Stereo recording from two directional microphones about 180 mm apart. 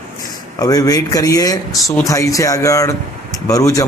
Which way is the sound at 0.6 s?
20° left (ahead or behind).